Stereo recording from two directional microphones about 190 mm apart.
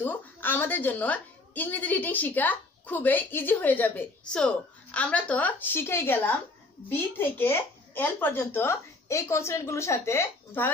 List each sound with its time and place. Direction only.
0.0 s a woman's voice: 10° left (ahead or behind)